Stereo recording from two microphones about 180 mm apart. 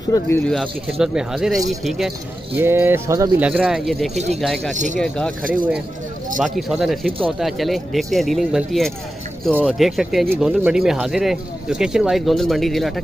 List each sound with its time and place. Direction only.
0.1 s speech: 20° left (ahead or behind)
0.5 s speech: centre (ahead or behind)
2.5 s speech: 10° right (ahead or behind)
4.1 s speech: 40° right (ahead or behind)
4.4 s speech: centre (ahead or behind)
4.7 s speech: 45° right (ahead or behind)
5.0 s speech: 5° left (ahead or behind)